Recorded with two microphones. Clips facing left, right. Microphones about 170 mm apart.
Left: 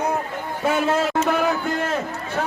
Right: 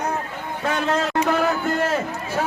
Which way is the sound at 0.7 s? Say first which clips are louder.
Left 2 dB; 10° left (ahead or behind).